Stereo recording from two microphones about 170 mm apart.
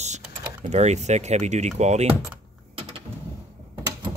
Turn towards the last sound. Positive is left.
turn(degrees=-10)  # may be behind; listen again after turning